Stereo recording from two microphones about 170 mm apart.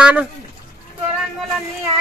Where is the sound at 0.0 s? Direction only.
5° right (ahead or behind).